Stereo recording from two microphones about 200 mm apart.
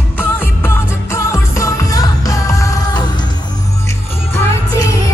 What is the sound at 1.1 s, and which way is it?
Music, 15° left (ahead or behind).